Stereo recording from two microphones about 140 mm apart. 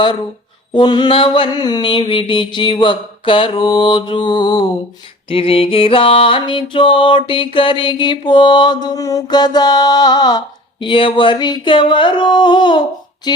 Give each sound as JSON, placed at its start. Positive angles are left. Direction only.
{"t": 0.7, "sound": "mantra", "side_deg": 30}